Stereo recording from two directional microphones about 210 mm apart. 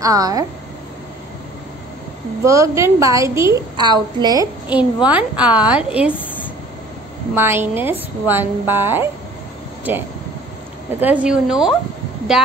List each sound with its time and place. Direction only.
0.0 s a woman's voice: 15° right (ahead or behind)
2.4 s a woman's voice: 15° right (ahead or behind)
4.6 s a woman's voice: 5° right (ahead or behind)
7.3 s a woman's voice: 10° right (ahead or behind)
11.0 s speech: 5° right (ahead or behind)